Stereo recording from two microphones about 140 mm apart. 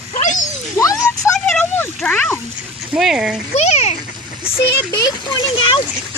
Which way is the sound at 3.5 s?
50° left (ahead or behind).